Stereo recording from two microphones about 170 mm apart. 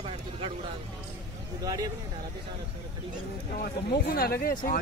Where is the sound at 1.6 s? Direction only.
20° right (ahead or behind).